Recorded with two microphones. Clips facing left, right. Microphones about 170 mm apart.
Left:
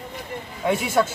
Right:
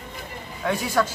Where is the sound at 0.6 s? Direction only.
25° left (ahead or behind).